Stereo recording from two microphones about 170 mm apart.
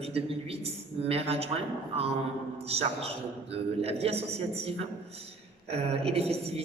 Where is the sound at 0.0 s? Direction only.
35° right (ahead or behind).